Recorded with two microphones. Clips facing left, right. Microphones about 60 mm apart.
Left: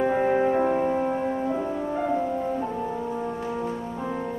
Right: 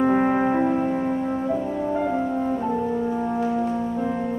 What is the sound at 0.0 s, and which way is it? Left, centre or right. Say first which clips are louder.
Music: right 2 dB; right.